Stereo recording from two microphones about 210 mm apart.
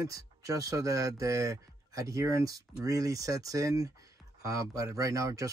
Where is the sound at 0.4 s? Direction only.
15° right (ahead or behind).